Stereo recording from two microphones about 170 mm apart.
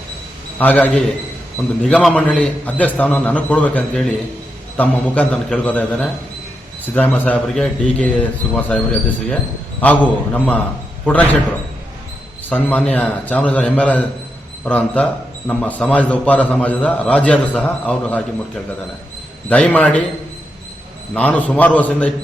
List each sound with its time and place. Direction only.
0.6 s a man's voice: 10° left (ahead or behind)
1.9 s a man's voice: centre (ahead or behind)
12.5 s a man's voice: 10° left (ahead or behind)
21.1 s a man's voice: 10° left (ahead or behind)